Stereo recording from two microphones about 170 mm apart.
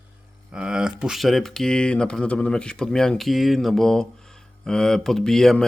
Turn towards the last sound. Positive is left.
turn(degrees=5)  # may be behind; listen again after turning